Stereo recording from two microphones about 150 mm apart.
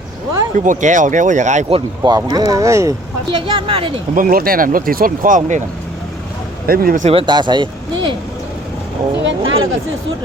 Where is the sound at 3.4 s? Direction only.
35° right (ahead or behind).